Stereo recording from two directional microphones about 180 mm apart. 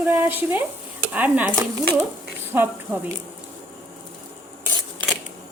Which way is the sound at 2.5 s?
10° right (ahead or behind).